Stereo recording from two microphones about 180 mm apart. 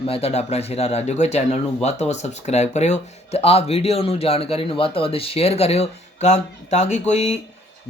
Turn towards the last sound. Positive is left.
turn(degrees=40)  # may be behind; listen again after turning